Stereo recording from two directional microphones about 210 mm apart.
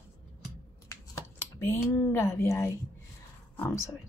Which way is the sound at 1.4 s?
10° left (ahead or behind).